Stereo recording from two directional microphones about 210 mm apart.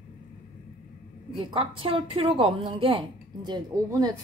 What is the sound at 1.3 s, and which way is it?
A woman's voice, 25° right (ahead or behind).